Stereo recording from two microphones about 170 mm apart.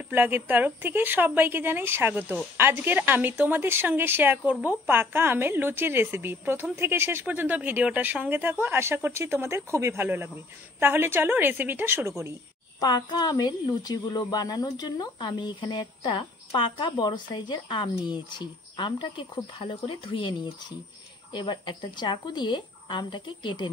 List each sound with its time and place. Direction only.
0.1 s a woman's voice: 10° right (ahead or behind)
12.8 s speech: 25° left (ahead or behind)